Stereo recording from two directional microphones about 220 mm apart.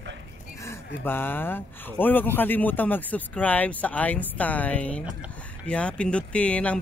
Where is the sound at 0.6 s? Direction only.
10° left (ahead or behind).